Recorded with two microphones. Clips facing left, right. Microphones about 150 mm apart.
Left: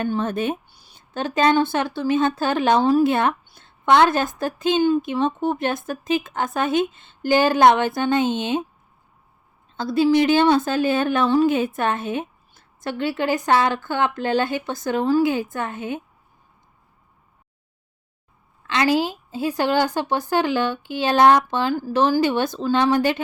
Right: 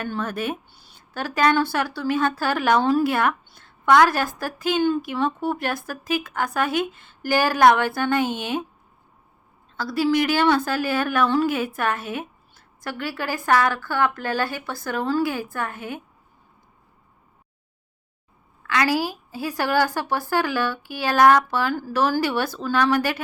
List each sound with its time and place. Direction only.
0.0 s a woman's voice: 25° left (ahead or behind)
0.7 s a woman's voice: 15° left (ahead or behind)
9.7 s a woman's voice: 25° left (ahead or behind)
18.6 s a woman's voice: 25° left (ahead or behind)